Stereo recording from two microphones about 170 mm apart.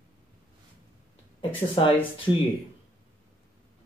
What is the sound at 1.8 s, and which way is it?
Speech, 30° left (ahead or behind).